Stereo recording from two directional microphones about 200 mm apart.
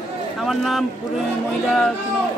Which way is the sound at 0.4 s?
Centre (ahead or behind).